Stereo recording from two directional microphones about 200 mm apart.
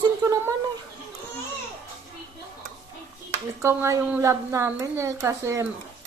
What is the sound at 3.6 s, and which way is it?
A woman's voice, 15° right (ahead or behind).